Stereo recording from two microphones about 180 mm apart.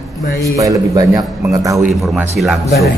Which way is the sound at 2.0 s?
Centre (ahead or behind).